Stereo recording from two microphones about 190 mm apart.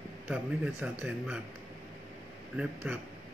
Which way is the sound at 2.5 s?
10° right (ahead or behind).